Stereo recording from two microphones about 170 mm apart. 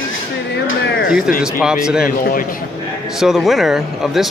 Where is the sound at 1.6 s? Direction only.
5° right (ahead or behind).